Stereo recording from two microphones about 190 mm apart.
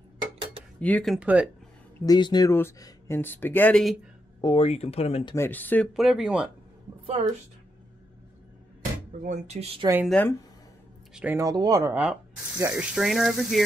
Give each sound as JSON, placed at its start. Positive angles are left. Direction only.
{"t": 0.7, "sound": "speech", "side_deg": 5}
{"t": 2.0, "sound": "speech", "side_deg": 20}
{"t": 4.4, "sound": "speech", "side_deg": 30}
{"t": 5.3, "sound": "speech", "side_deg": 10}
{"t": 5.9, "sound": "speech", "side_deg": 0}
{"t": 9.2, "sound": "speech", "side_deg": -35}
{"t": 10.0, "sound": "speech", "side_deg": 5}
{"t": 11.1, "sound": "speech", "side_deg": -10}
{"t": 12.0, "sound": "speech", "side_deg": -5}